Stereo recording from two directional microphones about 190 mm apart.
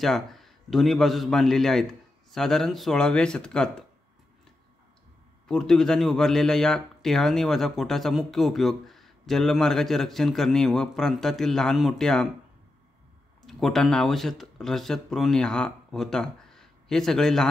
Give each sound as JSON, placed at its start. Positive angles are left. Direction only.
{"t": 0.0, "sound": "a man's voice", "side_deg": 0}
{"t": 5.5, "sound": "a man's voice", "side_deg": 5}
{"t": 13.5, "sound": "speech", "side_deg": 0}